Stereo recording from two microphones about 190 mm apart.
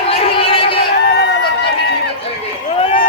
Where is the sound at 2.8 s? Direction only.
45° left (ahead or behind).